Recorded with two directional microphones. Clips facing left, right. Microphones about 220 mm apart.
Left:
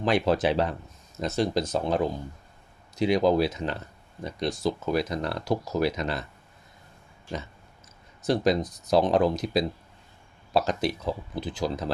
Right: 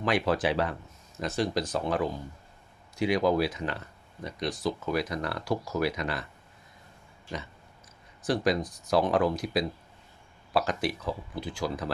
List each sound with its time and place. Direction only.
0.0 s speech: 25° left (ahead or behind)
8.2 s speech: 25° left (ahead or behind)